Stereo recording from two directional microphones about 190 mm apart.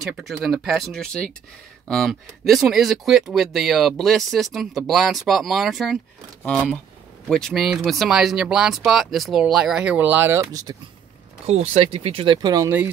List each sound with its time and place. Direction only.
0.0 s speech: centre (ahead or behind)
7.2 s speech: centre (ahead or behind); by 10.8 s 20° right (ahead or behind)
11.4 s speech: 35° right (ahead or behind); by 12.9 s 10° right (ahead or behind)